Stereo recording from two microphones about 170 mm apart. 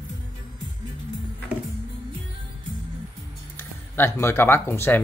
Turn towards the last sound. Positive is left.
turn(degrees=10)  # may be behind; listen again after turning